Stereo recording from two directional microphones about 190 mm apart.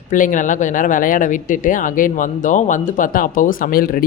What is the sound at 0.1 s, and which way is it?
Speech, 45° left (ahead or behind).